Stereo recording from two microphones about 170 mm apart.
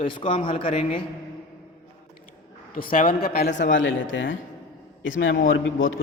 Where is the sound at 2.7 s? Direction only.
55° left (ahead or behind).